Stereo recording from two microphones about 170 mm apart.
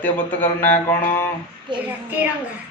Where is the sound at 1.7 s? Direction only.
30° right (ahead or behind).